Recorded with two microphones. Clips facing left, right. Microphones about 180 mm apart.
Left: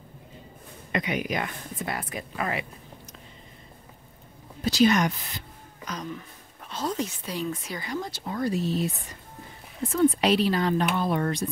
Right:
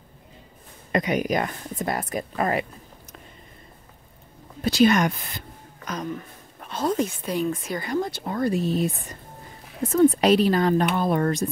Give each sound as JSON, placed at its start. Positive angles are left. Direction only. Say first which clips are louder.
{"t": 0.9, "sound": "speech", "louder": "right 5 dB", "side_deg": -40}
{"t": 4.6, "sound": "speech", "louder": "right 2 dB", "side_deg": -55}